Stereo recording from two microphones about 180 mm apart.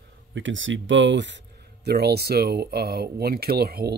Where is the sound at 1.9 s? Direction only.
65° right (ahead or behind).